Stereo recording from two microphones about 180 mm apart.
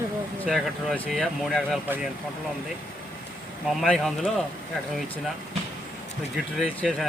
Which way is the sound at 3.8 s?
5° left (ahead or behind).